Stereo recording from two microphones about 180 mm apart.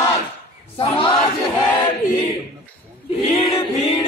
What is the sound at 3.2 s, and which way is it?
Choir, 35° left (ahead or behind).